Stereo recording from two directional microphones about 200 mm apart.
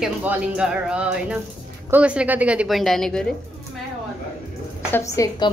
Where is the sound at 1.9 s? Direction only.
5° right (ahead or behind).